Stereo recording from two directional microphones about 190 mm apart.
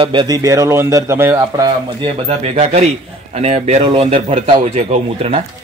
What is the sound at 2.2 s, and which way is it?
Speech, 35° right (ahead or behind).